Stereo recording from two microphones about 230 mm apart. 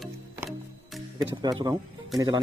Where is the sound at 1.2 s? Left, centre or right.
Centre.